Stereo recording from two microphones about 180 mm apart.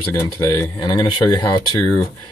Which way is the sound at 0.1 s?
20° left (ahead or behind).